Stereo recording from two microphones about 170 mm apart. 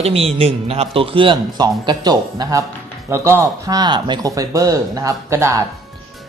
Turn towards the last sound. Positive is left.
turn(degrees=-15)  # may be behind; listen again after turning